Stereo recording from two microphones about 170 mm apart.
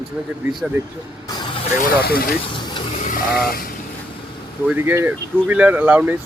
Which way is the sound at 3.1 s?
60° left (ahead or behind).